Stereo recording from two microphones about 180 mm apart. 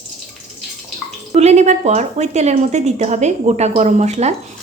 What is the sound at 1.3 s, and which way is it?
Speech, 40° right (ahead or behind).